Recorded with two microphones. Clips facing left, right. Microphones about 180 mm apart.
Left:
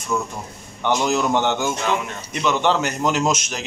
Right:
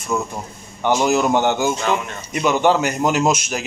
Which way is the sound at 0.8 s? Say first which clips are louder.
Right 3 dB; 10° right (ahead or behind).